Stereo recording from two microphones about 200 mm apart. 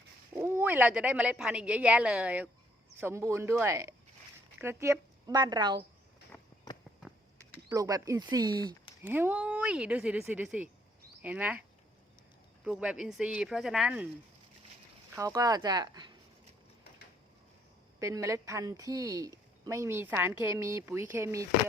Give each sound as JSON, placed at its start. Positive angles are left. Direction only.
{"t": 0.3, "sound": "a woman's voice", "side_deg": -10}
{"t": 6.3, "sound": "run", "side_deg": 0}
{"t": 7.7, "sound": "a woman's voice", "side_deg": -15}
{"t": 12.6, "sound": "speech", "side_deg": -5}
{"t": 15.1, "sound": "speech", "side_deg": -15}
{"t": 18.0, "sound": "a woman's voice", "side_deg": -15}